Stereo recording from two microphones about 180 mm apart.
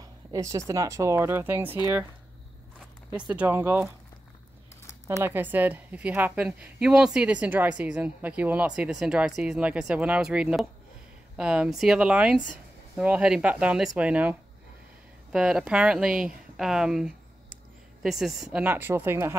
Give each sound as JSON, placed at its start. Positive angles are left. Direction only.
{"t": 0.0, "sound": "speech", "side_deg": -20}
{"t": 3.1, "sound": "speech", "side_deg": -10}
{"t": 5.2, "sound": "speech", "side_deg": -10}
{"t": 15.3, "sound": "speech", "side_deg": -5}